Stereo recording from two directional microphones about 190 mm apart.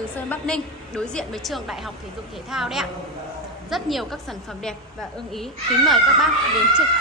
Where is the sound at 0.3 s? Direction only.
5° left (ahead or behind).